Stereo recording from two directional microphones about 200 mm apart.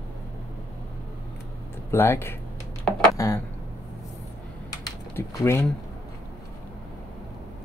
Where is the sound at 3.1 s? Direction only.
15° left (ahead or behind).